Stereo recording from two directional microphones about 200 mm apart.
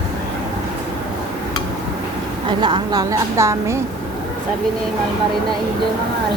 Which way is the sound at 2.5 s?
25° right (ahead or behind).